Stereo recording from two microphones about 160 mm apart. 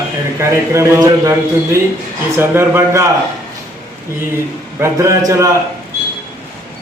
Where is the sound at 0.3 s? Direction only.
15° right (ahead or behind).